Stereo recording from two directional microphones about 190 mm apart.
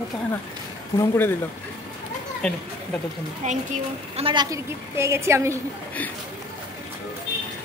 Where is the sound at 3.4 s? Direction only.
40° right (ahead or behind).